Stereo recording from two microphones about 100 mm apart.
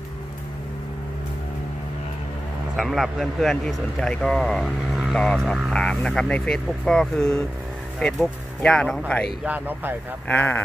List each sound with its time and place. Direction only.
2.7 s speech: centre (ahead or behind)
9.4 s speech: 15° right (ahead or behind)
10.2 s speech: 20° left (ahead or behind)